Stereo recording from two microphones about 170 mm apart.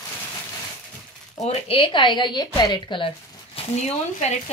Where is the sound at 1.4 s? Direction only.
35° left (ahead or behind).